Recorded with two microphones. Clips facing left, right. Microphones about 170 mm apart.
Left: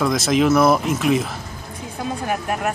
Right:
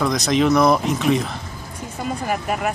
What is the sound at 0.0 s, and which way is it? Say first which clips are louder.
Speech: left 1 dB; centre (ahead or behind).